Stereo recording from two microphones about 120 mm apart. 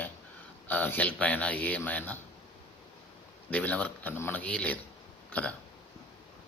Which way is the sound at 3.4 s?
10° left (ahead or behind).